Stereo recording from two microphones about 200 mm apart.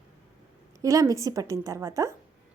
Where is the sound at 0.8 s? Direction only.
15° right (ahead or behind).